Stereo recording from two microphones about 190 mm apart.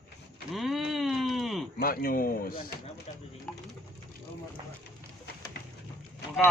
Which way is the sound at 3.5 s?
Centre (ahead or behind).